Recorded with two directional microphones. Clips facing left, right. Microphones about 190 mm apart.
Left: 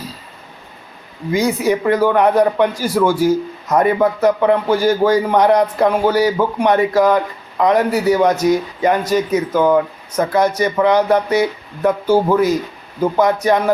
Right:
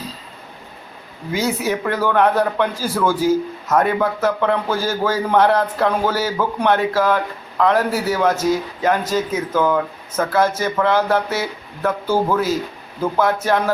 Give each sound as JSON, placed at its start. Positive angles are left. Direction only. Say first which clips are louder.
{"t": 1.6, "sound": "a man's voice", "louder": "left 6 dB", "side_deg": 15}